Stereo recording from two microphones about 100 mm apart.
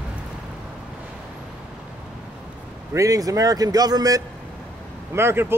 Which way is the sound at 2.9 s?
35° right (ahead or behind).